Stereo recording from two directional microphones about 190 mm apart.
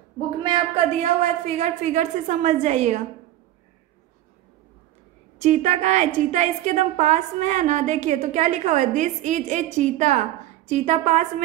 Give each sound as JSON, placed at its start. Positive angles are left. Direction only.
{"t": 0.4, "sound": "a woman's voice", "side_deg": -30}
{"t": 5.4, "sound": "a woman's voice", "side_deg": -40}